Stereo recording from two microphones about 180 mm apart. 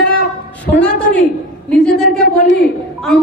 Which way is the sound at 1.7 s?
5° left (ahead or behind).